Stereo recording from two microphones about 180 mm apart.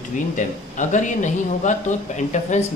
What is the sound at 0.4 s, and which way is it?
Speech, 45° left (ahead or behind).